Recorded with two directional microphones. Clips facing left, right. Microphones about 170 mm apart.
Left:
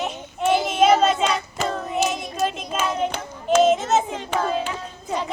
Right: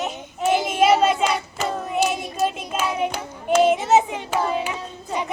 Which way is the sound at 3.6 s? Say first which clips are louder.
Right 1 dB; 10° right (ahead or behind).